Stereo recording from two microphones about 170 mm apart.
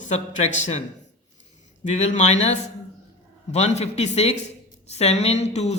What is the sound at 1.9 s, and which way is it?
A woman's voice, 45° left (ahead or behind).